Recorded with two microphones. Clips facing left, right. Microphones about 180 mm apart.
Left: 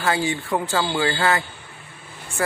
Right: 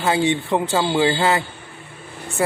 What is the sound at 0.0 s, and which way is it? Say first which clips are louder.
Speech: right 4 dB; 25° right (ahead or behind).